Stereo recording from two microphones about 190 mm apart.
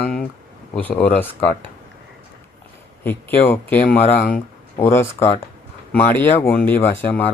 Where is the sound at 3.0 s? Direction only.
10° left (ahead or behind).